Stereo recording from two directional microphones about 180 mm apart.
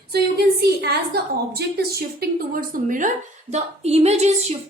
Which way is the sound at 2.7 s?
45° right (ahead or behind).